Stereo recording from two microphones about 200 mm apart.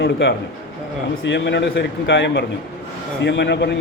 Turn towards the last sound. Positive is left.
turn(degrees=60)  # may be behind; listen again after turning